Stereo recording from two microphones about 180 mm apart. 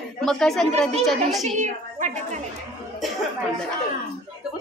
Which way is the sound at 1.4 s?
40° right (ahead or behind).